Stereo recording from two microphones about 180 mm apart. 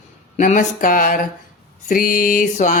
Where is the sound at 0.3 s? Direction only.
45° left (ahead or behind).